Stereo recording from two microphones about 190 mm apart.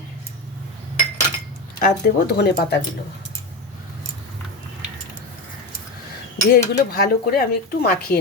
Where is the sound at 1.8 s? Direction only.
55° left (ahead or behind).